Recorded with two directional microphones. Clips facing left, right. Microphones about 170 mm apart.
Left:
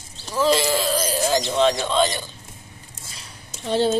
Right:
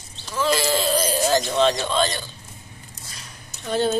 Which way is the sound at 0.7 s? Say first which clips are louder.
Right 1 dB; centre (ahead or behind).